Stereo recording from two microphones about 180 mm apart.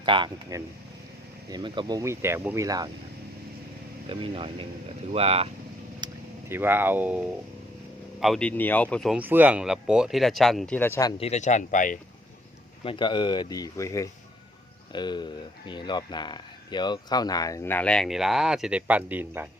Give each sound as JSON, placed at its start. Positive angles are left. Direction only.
{"t": 0.0, "sound": "speech", "side_deg": -25}
{"t": 4.1, "sound": "speech", "side_deg": -30}
{"t": 6.0, "sound": "vehicle", "side_deg": -25}
{"t": 6.5, "sound": "speech", "side_deg": -10}
{"t": 8.2, "sound": "speech", "side_deg": 5}
{"t": 10.8, "sound": "speech", "side_deg": 15}
{"t": 11.2, "sound": "speech", "side_deg": 40}
{"t": 12.8, "sound": "speech", "side_deg": 30}